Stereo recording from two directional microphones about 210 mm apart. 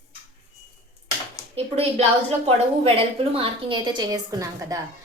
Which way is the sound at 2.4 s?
25° right (ahead or behind).